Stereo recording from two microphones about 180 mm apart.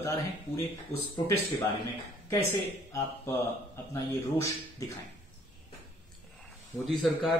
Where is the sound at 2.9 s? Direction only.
15° left (ahead or behind).